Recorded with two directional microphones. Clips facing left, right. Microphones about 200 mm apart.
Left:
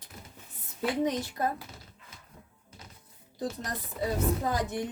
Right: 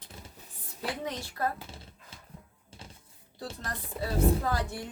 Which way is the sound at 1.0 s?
20° left (ahead or behind).